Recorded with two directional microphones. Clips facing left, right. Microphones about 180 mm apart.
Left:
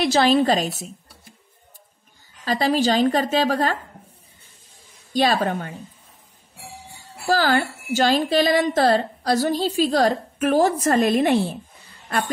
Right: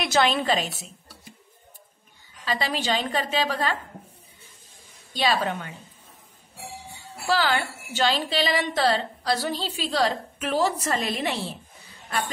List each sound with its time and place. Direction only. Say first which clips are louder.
0.0 s a woman's voice: left 6 dB; 35° left (ahead or behind)
2.4 s a woman's voice: left 7 dB; 45° left (ahead or behind)
5.1 s a woman's voice: left 5 dB; 45° left (ahead or behind)
7.2 s a woman's voice: left 4 dB; 45° left (ahead or behind)